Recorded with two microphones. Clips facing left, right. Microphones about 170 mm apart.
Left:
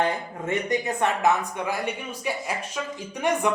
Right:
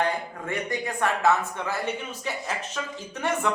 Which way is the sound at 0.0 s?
20° left (ahead or behind).